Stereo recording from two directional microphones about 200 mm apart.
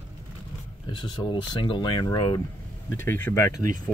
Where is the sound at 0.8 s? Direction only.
25° left (ahead or behind).